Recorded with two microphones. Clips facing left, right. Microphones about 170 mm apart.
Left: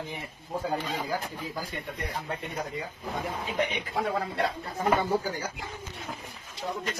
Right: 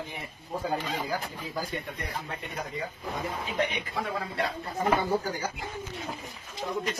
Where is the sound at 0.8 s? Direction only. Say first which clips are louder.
Even; 10° right (ahead or behind).